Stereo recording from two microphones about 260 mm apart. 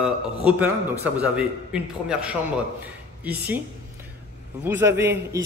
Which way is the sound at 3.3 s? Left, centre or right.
Centre.